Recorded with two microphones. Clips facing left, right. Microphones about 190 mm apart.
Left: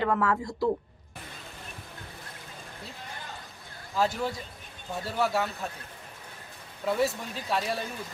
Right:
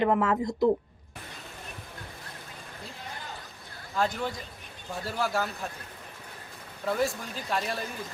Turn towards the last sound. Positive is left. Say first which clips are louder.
# left 1 dB
turn(degrees=0)  # may be behind; listen again after turning